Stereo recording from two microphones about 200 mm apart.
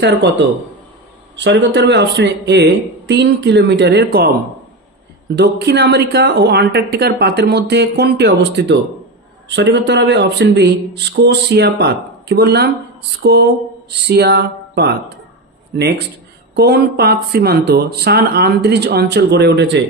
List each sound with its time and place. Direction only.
0.0 s speech: 60° right (ahead or behind)
5.3 s speech: 60° right (ahead or behind)